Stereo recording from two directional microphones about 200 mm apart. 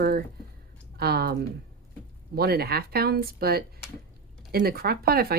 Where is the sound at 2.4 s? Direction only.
50° right (ahead or behind).